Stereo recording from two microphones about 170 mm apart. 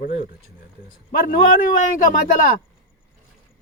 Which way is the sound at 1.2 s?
55° left (ahead or behind).